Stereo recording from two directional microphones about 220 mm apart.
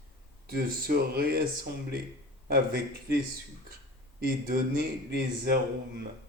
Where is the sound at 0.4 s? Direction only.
40° right (ahead or behind).